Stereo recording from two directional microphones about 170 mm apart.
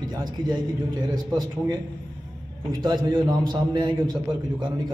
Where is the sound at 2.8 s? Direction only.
25° right (ahead or behind).